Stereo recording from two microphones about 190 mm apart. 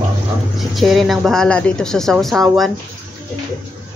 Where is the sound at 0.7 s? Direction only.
Centre (ahead or behind).